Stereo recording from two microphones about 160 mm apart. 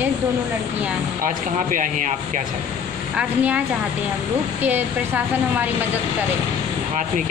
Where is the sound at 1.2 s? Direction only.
55° right (ahead or behind).